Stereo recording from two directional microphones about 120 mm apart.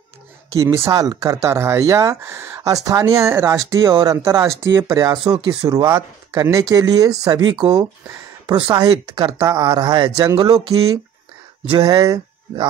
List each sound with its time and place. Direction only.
0.6 s speech: 25° right (ahead or behind)